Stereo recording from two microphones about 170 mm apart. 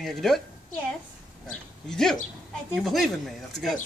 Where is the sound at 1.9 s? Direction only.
5° left (ahead or behind).